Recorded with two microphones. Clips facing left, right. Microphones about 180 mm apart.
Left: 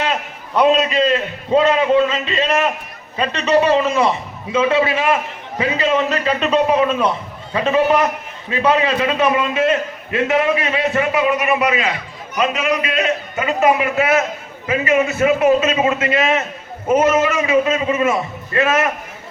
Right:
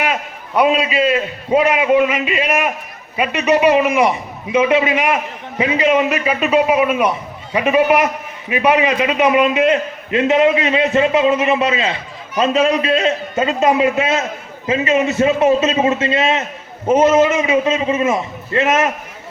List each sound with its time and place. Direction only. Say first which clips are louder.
0.0 s a man's voice: right 1 dB; 10° right (ahead or behind)